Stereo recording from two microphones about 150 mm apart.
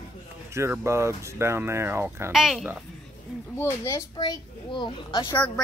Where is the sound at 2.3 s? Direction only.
Centre (ahead or behind).